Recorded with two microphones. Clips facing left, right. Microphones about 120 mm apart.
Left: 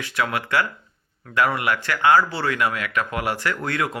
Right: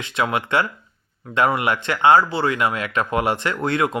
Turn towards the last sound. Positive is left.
turn(degrees=-25)  # may be behind; listen again after turning